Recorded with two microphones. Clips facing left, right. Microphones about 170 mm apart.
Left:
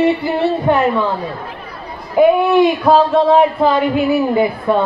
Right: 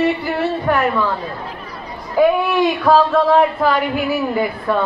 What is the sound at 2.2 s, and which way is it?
A man's voice, 20° left (ahead or behind).